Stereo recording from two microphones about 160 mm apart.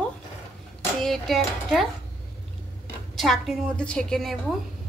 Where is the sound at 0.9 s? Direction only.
Centre (ahead or behind).